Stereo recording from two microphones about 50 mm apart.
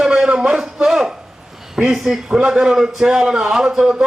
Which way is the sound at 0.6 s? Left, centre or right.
Centre.